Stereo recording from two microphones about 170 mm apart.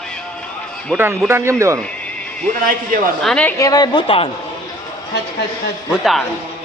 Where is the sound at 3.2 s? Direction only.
5° left (ahead or behind).